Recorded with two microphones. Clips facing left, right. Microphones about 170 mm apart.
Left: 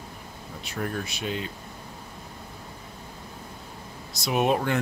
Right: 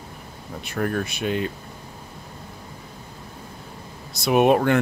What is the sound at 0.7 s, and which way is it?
Speech, 60° right (ahead or behind).